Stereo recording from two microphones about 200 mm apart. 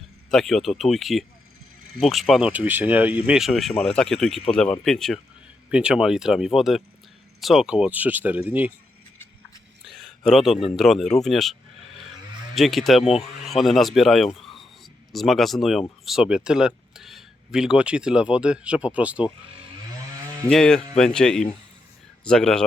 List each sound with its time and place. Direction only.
0.3 s speech: centre (ahead or behind)
9.8 s a sound: centre (ahead or behind)
10.8 s speech: centre (ahead or behind)
12.5 s speech: centre (ahead or behind)
13.0 s speech: 30° left (ahead or behind)
13.4 s speech: centre (ahead or behind)
20.5 s speech: 5° left (ahead or behind)